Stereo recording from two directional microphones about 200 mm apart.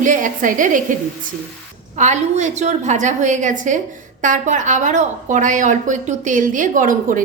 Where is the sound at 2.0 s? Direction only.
35° right (ahead or behind).